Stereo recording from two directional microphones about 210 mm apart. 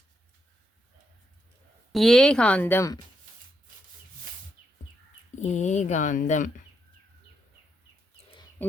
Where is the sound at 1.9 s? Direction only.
Centre (ahead or behind).